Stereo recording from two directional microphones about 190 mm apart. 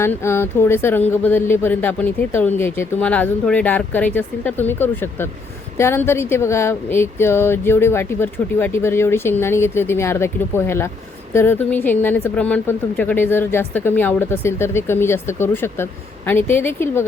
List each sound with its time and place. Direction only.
0.0 s a woman's voice: 15° left (ahead or behind)